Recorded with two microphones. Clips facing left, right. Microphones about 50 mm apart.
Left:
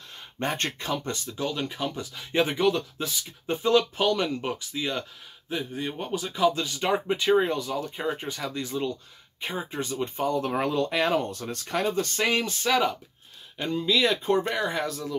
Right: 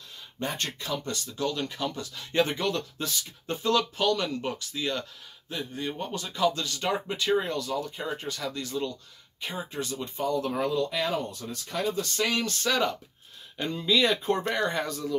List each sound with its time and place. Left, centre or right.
0.4 s speech: left
12.2 s speech: left
13.6 s speech: centre